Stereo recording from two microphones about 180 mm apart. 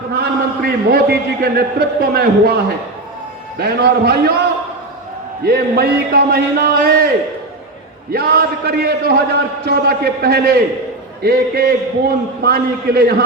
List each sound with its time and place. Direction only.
0.1 s a man's voice: 60° right (ahead or behind)
3.6 s a man's voice: 60° right (ahead or behind)
5.4 s a man's voice: 60° right (ahead or behind)
8.1 s a man's voice: 55° right (ahead or behind)